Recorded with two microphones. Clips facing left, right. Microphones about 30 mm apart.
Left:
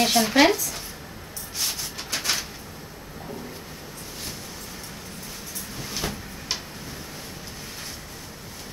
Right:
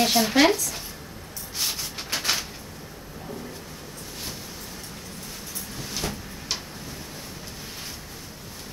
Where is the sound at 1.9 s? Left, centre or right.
Right.